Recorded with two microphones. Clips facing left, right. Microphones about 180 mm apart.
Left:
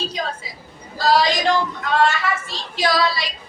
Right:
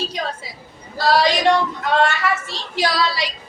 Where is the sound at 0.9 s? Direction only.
70° right (ahead or behind).